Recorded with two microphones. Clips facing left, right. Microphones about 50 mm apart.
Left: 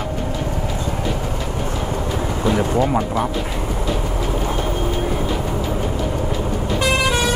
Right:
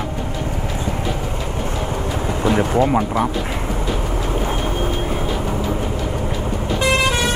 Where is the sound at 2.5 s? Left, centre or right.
Centre.